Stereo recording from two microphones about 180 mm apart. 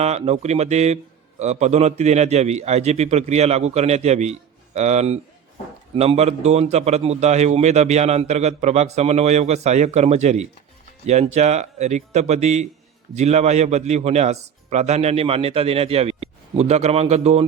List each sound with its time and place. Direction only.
0.0 s a man's voice: 35° right (ahead or behind)